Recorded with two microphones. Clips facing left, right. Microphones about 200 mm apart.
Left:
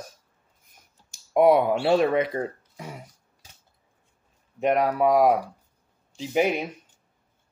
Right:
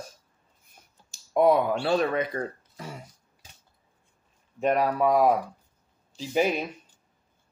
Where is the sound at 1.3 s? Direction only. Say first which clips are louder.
Left 3 dB; 20° left (ahead or behind).